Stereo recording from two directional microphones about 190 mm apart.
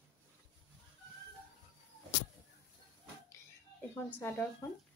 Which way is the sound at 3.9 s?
10° left (ahead or behind).